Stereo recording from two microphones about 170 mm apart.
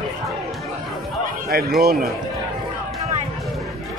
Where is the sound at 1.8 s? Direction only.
60° right (ahead or behind).